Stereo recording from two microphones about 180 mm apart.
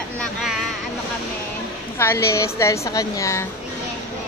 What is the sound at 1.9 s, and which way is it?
A woman's voice, 15° left (ahead or behind).